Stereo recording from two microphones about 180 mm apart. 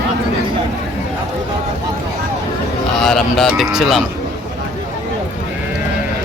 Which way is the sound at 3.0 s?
Centre (ahead or behind).